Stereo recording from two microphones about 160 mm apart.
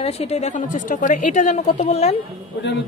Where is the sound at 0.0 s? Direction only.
40° left (ahead or behind).